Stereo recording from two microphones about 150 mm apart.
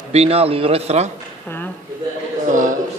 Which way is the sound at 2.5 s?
60° right (ahead or behind).